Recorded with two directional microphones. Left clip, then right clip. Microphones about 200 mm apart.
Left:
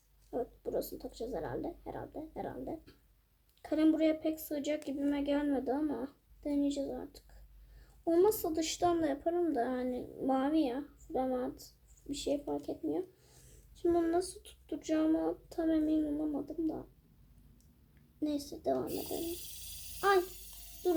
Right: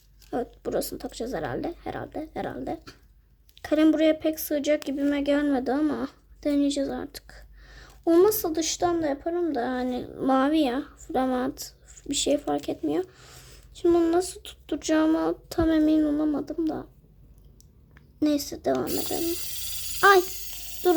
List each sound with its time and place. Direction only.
0.3 s a woman's voice: 35° right (ahead or behind)
18.2 s a woman's voice: 30° right (ahead or behind)
18.9 s speech: 50° right (ahead or behind)
20.0 s a woman's voice: 30° right (ahead or behind)